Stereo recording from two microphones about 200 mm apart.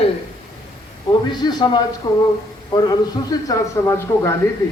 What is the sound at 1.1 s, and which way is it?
Speech, 20° left (ahead or behind).